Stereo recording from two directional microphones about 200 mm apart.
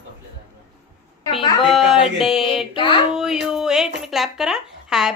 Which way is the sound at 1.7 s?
Centre (ahead or behind).